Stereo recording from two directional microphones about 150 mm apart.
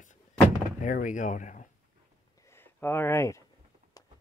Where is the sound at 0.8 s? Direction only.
60° left (ahead or behind).